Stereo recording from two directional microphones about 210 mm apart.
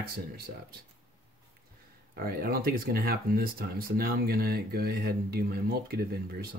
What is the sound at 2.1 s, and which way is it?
Speech, 45° right (ahead or behind).